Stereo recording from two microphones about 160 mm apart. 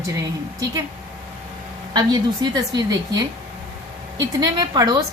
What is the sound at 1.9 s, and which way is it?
A woman's voice, 25° right (ahead or behind).